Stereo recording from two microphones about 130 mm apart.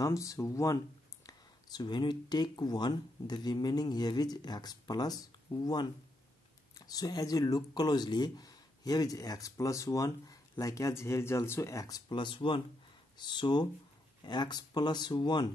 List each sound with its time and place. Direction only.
0.0 s speech: 25° left (ahead or behind)
6.9 s speech: 30° left (ahead or behind)